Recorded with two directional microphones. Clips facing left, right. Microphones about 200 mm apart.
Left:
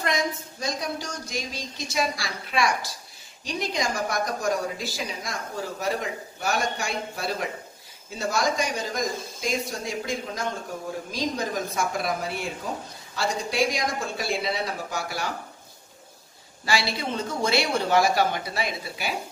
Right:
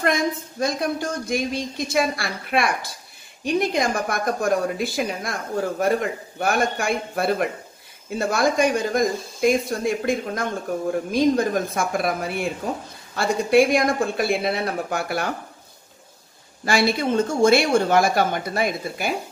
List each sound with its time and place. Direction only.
0.6 s a woman's voice: 55° right (ahead or behind)
16.6 s speech: 50° right (ahead or behind)